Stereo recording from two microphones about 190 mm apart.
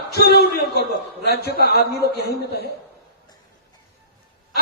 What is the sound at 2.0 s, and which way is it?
Speech, 55° left (ahead or behind).